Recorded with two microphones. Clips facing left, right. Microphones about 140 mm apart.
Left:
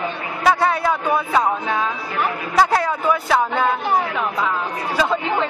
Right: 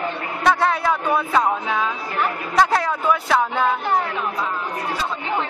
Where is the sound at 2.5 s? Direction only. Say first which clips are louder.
Left 1 dB; centre (ahead or behind).